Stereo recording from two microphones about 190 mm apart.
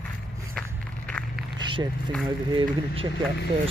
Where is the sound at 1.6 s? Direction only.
25° right (ahead or behind).